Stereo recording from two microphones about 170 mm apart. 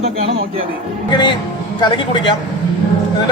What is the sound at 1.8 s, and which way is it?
Speech, 25° left (ahead or behind).